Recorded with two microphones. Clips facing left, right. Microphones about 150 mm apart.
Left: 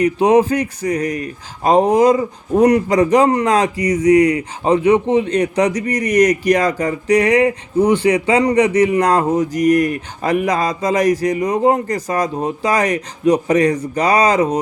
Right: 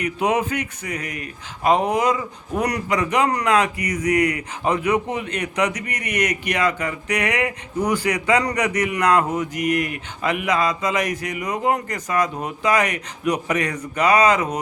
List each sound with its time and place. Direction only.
0.0 s speech: 35° left (ahead or behind)